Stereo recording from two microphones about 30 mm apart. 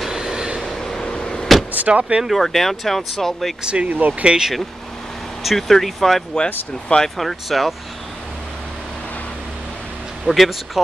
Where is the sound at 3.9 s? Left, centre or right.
Right.